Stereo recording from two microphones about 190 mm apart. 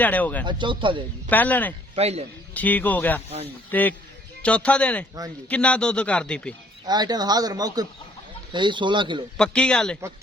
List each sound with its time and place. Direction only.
0.0 s a man's voice: 10° left (ahead or behind)
0.4 s speech: 25° right (ahead or behind)
1.3 s a man's voice: 10° left (ahead or behind)
2.0 s a man's voice: 35° right (ahead or behind)
2.5 s a man's voice: 10° left (ahead or behind)
6.8 s speech: 20° right (ahead or behind)
9.4 s a man's voice: 5° left (ahead or behind)